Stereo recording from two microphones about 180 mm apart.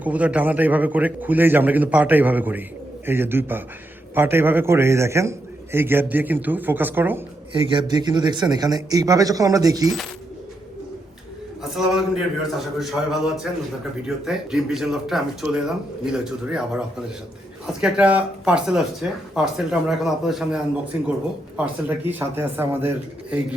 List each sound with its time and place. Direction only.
0.0 s a man's voice: 10° right (ahead or behind)
7.7 s speech: 25° right (ahead or behind)
11.9 s a man's voice: centre (ahead or behind)